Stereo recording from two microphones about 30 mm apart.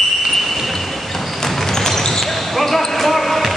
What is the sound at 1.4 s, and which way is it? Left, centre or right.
Basketball bounce, centre.